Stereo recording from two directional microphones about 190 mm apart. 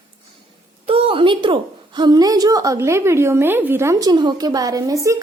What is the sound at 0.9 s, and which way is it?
A woman's voice, 30° right (ahead or behind).